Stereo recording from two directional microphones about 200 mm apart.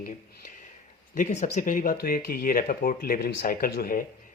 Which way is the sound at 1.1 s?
40° left (ahead or behind).